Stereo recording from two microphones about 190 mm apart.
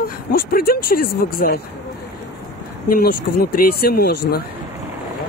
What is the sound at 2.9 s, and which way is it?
Speech, 55° left (ahead or behind).